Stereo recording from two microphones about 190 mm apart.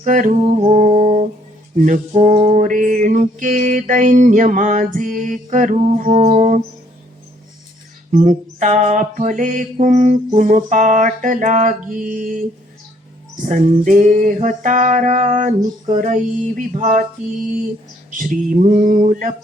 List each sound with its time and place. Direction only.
0.0 s music: 40° right (ahead or behind)
8.1 s music: 40° right (ahead or behind)
9.8 s mantra: 40° right (ahead or behind)
13.4 s music: 45° right (ahead or behind)
18.1 s music: 45° right (ahead or behind)